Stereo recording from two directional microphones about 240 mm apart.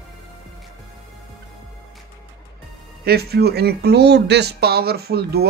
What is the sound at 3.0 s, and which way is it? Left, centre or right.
Speech, right.